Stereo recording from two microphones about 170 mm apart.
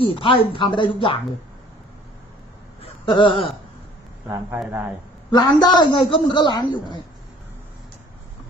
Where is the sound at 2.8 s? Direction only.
30° left (ahead or behind).